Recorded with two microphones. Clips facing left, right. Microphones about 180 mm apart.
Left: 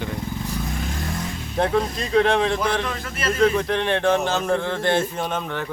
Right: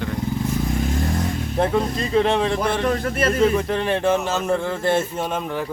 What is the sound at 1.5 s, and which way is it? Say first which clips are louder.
A man's voice: even; 5° right (ahead or behind).